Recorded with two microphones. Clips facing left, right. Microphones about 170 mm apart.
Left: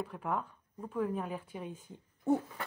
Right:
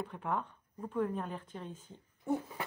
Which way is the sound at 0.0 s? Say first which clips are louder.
Left 1 dB; 5° left (ahead or behind).